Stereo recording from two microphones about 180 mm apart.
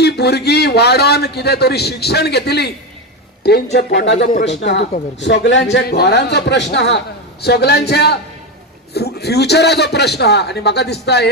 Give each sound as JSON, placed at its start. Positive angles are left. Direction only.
{"t": 0.0, "sound": "a man's voice", "side_deg": 65}
{"t": 3.7, "sound": "speech", "side_deg": 80}
{"t": 4.3, "sound": "speech", "side_deg": 45}
{"t": 4.6, "sound": "a man's voice", "side_deg": 75}